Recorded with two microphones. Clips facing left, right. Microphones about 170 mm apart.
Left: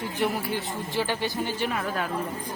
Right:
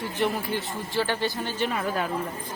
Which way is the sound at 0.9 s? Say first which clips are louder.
Right 1 dB; 15° left (ahead or behind).